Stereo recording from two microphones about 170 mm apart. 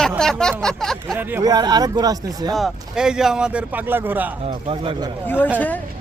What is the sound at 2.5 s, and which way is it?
Speech, centre (ahead or behind).